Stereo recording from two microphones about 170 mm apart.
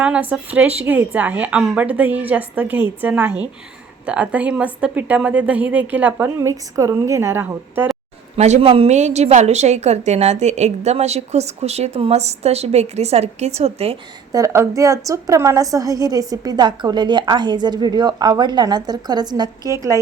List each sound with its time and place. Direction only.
0.0 s a woman's voice: 10° right (ahead or behind)
8.4 s a woman's voice: 35° right (ahead or behind)
14.3 s a woman's voice: 15° right (ahead or behind)